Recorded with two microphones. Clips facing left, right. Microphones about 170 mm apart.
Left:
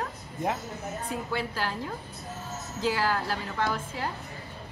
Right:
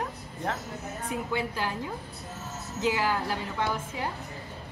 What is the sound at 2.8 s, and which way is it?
A woman's voice, 15° right (ahead or behind).